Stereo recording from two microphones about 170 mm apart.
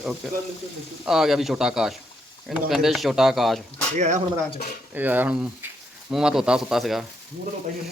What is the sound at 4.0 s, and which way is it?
Speech, 45° right (ahead or behind).